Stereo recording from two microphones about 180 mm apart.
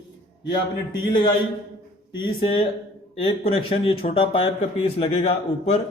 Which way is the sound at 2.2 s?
30° left (ahead or behind).